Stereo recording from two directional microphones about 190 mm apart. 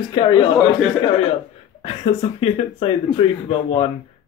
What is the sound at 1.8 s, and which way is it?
Speech, 30° left (ahead or behind).